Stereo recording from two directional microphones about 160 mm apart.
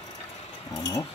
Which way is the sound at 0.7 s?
20° left (ahead or behind).